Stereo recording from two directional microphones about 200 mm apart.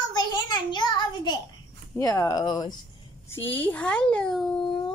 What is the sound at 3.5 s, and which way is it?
Speech, 10° left (ahead or behind).